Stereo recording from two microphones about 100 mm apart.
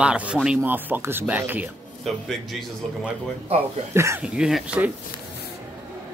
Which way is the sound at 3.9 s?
30° right (ahead or behind).